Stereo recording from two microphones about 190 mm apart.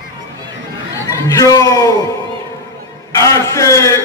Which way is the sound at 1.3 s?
15° left (ahead or behind).